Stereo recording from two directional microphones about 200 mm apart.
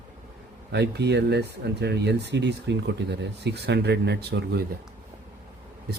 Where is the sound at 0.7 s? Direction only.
60° right (ahead or behind).